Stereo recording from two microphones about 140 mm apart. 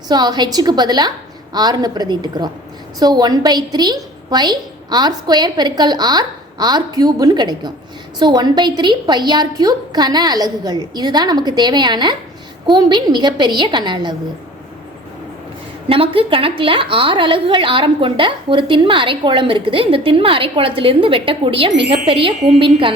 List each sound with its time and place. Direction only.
0.1 s a woman's voice: 30° right (ahead or behind)
15.9 s a woman's voice: 40° right (ahead or behind)